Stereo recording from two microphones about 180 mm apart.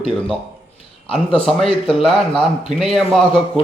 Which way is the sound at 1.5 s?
Centre (ahead or behind).